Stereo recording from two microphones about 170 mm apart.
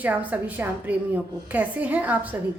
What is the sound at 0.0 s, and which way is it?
A woman's voice, 10° right (ahead or behind).